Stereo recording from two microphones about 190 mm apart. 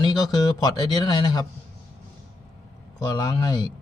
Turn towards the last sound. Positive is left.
turn(degrees=20)  # may be behind; listen again after turning